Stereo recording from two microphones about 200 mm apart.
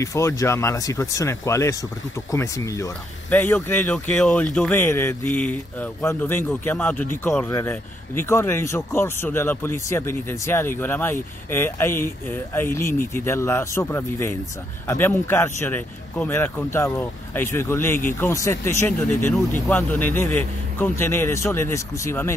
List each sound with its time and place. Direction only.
0.0 s speech: 15° left (ahead or behind)